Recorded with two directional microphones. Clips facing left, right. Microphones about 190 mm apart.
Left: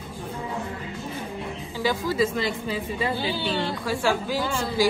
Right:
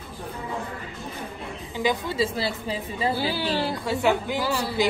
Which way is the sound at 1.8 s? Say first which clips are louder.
Even; 20° right (ahead or behind).